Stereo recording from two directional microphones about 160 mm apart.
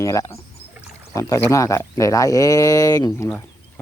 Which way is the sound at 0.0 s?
20° left (ahead or behind).